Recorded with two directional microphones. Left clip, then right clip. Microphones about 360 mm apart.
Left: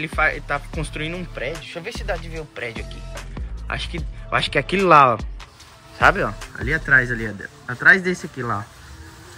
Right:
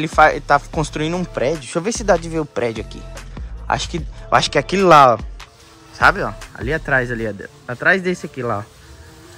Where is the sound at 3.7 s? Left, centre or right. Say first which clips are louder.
Right 4 dB; centre.